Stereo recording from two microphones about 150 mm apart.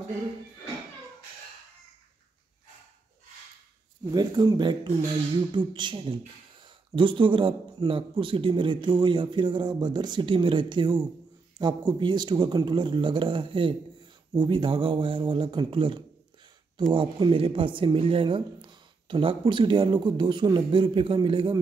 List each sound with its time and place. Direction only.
4.1 s speech: 25° right (ahead or behind)